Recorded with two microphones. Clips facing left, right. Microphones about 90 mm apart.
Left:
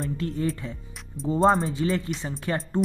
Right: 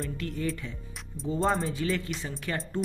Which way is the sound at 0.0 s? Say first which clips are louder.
Left 5 dB; 30° left (ahead or behind).